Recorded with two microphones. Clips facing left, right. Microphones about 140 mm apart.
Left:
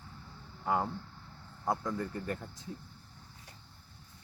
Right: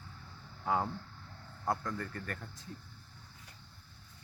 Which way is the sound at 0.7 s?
5° left (ahead or behind).